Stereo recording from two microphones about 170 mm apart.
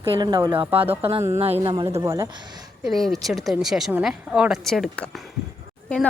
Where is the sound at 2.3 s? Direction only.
25° right (ahead or behind).